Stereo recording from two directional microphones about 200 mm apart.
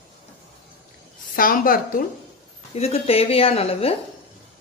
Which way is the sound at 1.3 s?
45° left (ahead or behind).